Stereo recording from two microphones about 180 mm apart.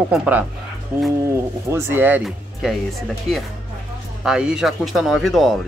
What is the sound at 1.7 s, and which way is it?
Speech, 10° right (ahead or behind).